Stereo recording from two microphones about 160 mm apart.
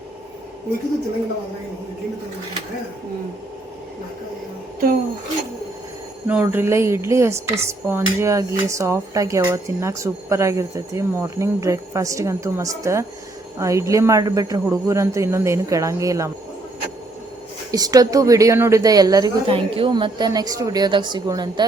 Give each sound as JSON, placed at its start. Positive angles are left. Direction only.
{"t": 6.2, "sound": "a woman's voice", "side_deg": -10}
{"t": 17.7, "sound": "speech", "side_deg": -25}